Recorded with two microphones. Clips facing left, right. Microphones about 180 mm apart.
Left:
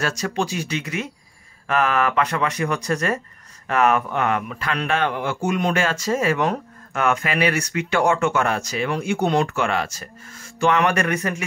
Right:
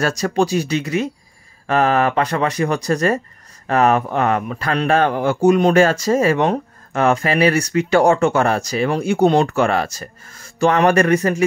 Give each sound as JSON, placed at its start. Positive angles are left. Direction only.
{"t": 0.0, "sound": "speech", "side_deg": -40}